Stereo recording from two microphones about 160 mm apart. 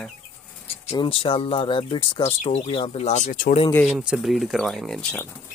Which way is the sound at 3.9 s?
5° right (ahead or behind).